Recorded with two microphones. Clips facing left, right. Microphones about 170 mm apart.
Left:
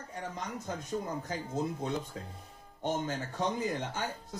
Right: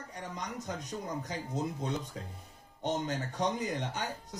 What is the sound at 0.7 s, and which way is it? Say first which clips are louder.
Speech: left 5 dB; 20° right (ahead or behind).